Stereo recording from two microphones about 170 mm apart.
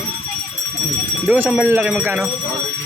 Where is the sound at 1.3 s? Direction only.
5° right (ahead or behind).